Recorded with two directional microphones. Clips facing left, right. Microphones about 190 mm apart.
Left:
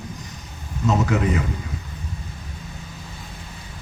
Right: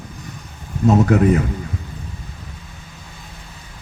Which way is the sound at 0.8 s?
50° right (ahead or behind).